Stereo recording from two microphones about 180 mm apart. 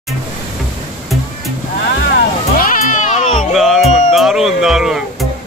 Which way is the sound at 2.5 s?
50° left (ahead or behind).